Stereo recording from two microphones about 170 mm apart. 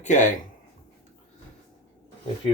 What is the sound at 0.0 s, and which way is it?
Speech, 45° left (ahead or behind).